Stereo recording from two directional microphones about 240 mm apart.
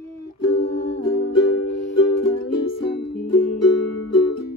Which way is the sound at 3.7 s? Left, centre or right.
Left.